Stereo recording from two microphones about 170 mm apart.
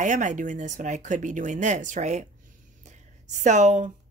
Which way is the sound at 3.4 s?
45° right (ahead or behind).